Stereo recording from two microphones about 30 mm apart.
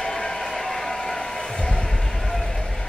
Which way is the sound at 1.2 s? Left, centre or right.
Left.